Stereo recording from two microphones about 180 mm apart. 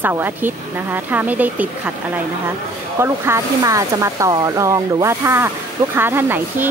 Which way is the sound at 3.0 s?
15° right (ahead or behind).